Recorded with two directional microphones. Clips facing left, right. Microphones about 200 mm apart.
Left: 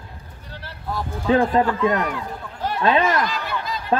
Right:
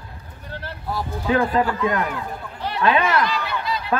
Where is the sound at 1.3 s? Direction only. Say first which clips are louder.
Left 3 dB; 30° left (ahead or behind).